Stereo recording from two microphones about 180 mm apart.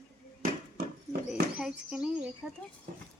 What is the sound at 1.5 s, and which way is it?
Speech, 5° right (ahead or behind).